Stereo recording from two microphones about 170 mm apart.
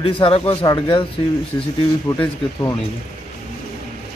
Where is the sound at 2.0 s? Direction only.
15° left (ahead or behind).